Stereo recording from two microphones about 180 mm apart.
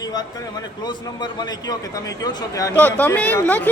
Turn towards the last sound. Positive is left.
turn(degrees=10)  # may be behind; listen again after turning